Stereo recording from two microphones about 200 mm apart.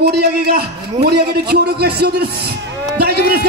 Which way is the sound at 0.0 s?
55° right (ahead or behind).